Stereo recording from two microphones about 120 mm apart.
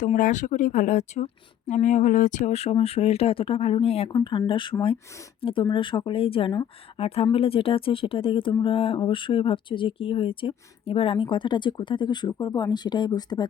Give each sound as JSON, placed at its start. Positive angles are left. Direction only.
{"t": 0.0, "sound": "speech", "side_deg": 90}
{"t": 4.1, "sound": "speech", "side_deg": 40}